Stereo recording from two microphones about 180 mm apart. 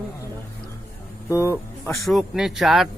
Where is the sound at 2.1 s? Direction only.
Centre (ahead or behind).